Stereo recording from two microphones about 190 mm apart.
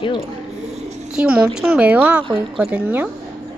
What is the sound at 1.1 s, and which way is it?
A woman's voice, 5° right (ahead or behind).